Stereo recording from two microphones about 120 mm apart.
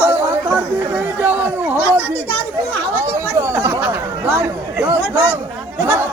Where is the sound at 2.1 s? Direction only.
20° left (ahead or behind).